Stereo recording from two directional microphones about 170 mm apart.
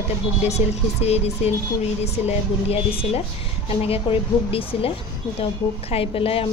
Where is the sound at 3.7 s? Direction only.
35° left (ahead or behind).